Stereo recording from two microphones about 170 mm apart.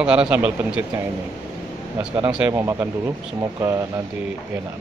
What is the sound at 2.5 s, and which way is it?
Speech, 20° right (ahead or behind).